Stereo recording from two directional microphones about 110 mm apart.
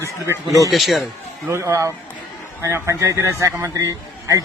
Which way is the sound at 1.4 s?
25° right (ahead or behind).